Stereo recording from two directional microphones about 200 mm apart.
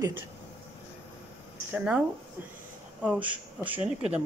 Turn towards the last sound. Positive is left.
turn(degrees=-30)  # may be behind; listen again after turning